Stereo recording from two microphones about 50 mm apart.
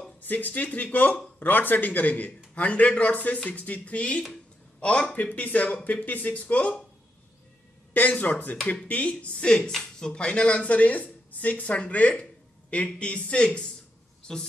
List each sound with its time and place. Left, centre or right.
0.2 s speech: left
7.9 s speech: left; by 14.5 s centre